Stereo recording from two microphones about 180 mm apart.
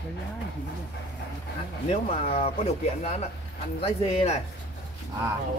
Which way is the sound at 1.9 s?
35° left (ahead or behind).